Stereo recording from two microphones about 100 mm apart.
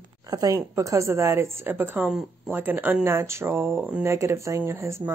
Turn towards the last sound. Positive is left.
turn(degrees=-30)  # may be behind; listen again after turning